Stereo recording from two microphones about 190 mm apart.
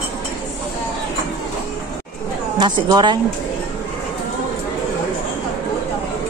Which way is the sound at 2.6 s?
20° right (ahead or behind).